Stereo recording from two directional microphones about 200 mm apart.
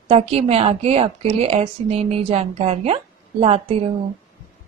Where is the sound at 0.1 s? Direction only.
30° right (ahead or behind).